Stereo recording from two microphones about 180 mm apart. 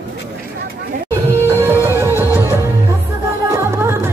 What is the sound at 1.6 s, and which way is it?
Music, 15° right (ahead or behind).